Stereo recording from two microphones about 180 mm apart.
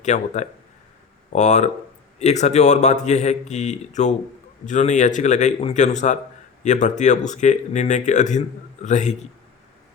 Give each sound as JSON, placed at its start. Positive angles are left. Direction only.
{"t": 0.0, "sound": "speech", "side_deg": 40}